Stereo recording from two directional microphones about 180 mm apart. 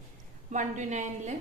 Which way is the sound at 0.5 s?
45° right (ahead or behind).